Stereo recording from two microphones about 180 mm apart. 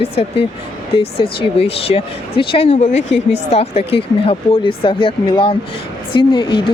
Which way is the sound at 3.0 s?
85° left.